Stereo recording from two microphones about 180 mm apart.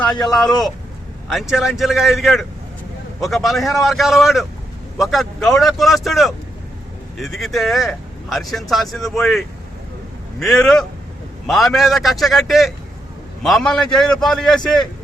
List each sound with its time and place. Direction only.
0.3 s a man's voice: centre (ahead or behind)